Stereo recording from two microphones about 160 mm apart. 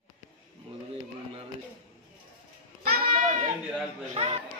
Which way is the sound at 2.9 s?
65° right (ahead or behind).